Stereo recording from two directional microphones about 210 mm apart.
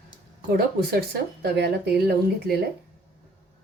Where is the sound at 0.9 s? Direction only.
50° right (ahead or behind).